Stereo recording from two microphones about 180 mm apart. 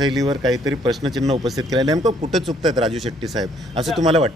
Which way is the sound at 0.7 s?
20° right (ahead or behind).